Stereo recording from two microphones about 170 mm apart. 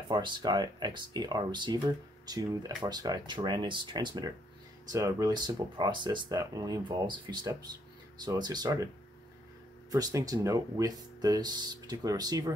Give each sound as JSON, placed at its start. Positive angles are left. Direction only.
{"t": 0.1, "sound": "speech", "side_deg": -25}
{"t": 9.8, "sound": "speech", "side_deg": -20}